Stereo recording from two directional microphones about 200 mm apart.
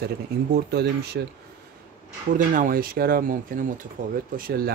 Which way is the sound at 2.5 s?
45° right (ahead or behind).